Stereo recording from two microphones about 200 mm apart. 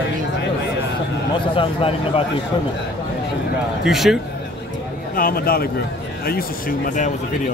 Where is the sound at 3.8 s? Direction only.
Centre (ahead or behind).